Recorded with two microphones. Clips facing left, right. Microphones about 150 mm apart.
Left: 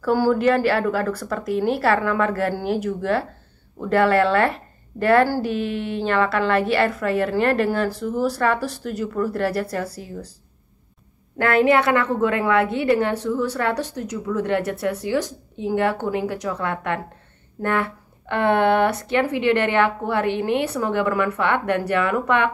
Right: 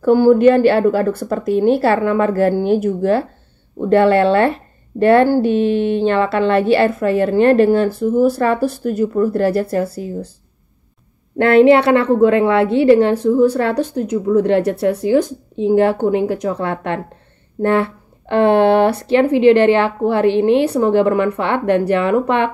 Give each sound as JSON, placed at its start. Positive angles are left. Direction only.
{"t": 0.0, "sound": "a woman's voice", "side_deg": -20}
{"t": 11.3, "sound": "a woman's voice", "side_deg": -25}